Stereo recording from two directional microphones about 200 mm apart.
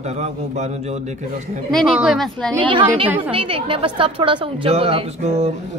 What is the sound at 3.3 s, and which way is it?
A woman's voice, 25° right (ahead or behind).